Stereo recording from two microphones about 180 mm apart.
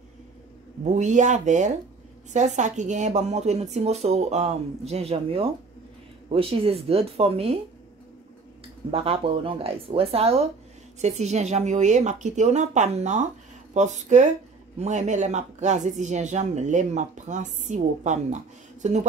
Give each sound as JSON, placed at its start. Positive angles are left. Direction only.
{"t": 0.9, "sound": "speech", "side_deg": -45}
{"t": 8.9, "sound": "speech", "side_deg": -30}